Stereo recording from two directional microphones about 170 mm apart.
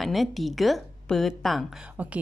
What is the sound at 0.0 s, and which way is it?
A woman's voice, centre (ahead or behind).